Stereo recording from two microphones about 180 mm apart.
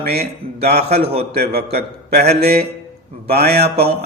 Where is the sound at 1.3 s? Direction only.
60° right (ahead or behind).